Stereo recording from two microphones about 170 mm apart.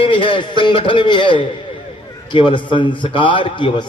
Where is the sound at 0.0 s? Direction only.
30° left (ahead or behind).